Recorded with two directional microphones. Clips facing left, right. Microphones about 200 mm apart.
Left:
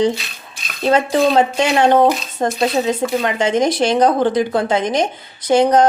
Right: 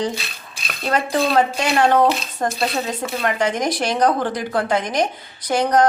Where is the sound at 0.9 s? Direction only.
25° left (ahead or behind).